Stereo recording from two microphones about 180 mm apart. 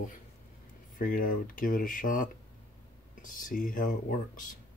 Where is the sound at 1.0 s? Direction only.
50° left (ahead or behind).